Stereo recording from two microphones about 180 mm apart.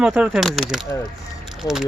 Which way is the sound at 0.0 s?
5° right (ahead or behind).